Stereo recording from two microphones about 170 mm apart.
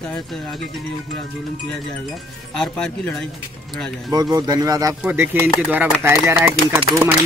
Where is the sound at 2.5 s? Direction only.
5° left (ahead or behind).